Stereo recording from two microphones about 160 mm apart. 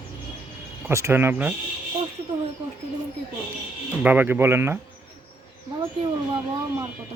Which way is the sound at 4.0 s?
10° right (ahead or behind).